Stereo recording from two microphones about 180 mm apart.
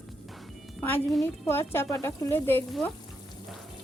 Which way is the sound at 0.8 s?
10° left (ahead or behind).